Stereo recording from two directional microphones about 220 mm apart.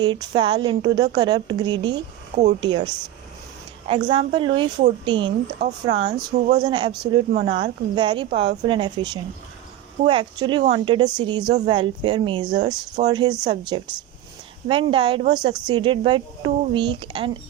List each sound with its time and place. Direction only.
0.0 s a woman's voice: 20° right (ahead or behind)
2.3 s speech: 30° right (ahead or behind)
2.6 s a woman's voice: 20° right (ahead or behind)
10.0 s a woman's voice: 20° right (ahead or behind)